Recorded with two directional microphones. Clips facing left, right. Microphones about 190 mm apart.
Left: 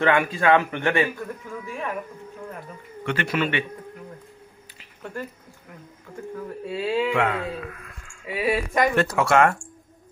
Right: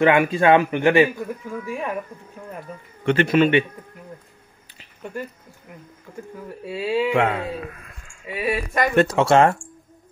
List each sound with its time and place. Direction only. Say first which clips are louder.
0.0 s a man's voice: right 4 dB; 20° right (ahead or behind)
3.1 s speech: right 8 dB; 25° right (ahead or behind)
6.1 s a man's voice: right 1 dB; 15° right (ahead or behind)
6.6 s speech: right 2 dB; 5° right (ahead or behind)
7.2 s speech: right 3 dB; 25° right (ahead or behind)
8.3 s speech: left 1 dB; 15° left (ahead or behind)
8.9 s speech: right 7 dB; 20° right (ahead or behind)